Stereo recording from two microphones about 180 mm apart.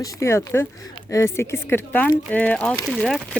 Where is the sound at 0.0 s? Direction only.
15° left (ahead or behind).